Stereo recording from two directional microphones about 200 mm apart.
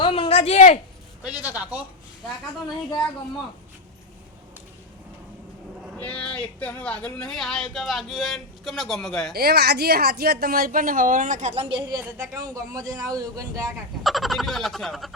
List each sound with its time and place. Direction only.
0.0 s a sound: 25° left (ahead or behind)
1.2 s a man's voice: 10° right (ahead or behind)
6.0 s speech: 5° left (ahead or behind)
9.3 s speech: 50° right (ahead or behind); by 11.8 s 30° right (ahead or behind)
12.3 s a man's voice: 15° right (ahead or behind)
14.0 s speech: centre (ahead or behind)